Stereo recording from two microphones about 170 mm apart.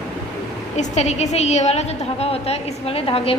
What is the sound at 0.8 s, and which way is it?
A woman's voice, 40° left (ahead or behind).